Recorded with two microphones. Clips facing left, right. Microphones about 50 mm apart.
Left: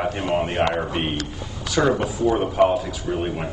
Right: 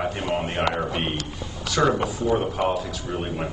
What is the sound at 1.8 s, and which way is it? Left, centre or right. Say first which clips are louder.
Speech: left 1 dB; centre.